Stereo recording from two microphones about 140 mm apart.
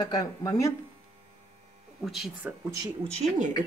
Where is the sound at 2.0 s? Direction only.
Centre (ahead or behind).